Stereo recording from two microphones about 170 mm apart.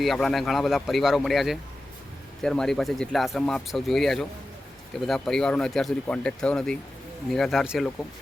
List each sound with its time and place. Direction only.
0.0 s speech: centre (ahead or behind)